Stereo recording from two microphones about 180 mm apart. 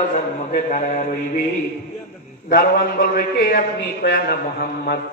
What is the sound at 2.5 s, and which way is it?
A man's voice, 60° left (ahead or behind).